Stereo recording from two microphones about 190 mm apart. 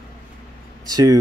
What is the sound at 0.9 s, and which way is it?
Speech, 20° right (ahead or behind).